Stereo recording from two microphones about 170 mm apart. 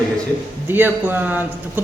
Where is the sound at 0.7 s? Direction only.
10° right (ahead or behind).